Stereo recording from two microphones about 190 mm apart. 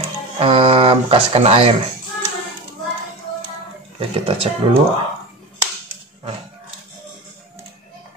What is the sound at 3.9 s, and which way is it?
Speech, 30° right (ahead or behind).